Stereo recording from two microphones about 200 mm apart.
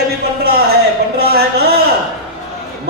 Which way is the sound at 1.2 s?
55° right (ahead or behind).